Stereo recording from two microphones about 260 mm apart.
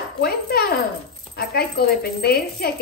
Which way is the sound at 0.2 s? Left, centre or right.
Left.